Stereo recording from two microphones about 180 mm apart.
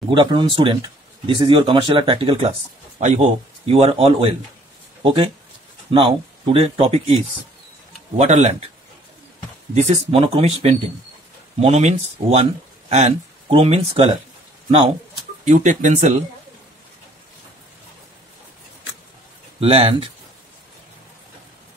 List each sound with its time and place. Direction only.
0.1 s speech: 25° right (ahead or behind)
9.8 s speech: 35° right (ahead or behind)
15.4 s speech: 45° right (ahead or behind)
19.6 s speech: 30° right (ahead or behind)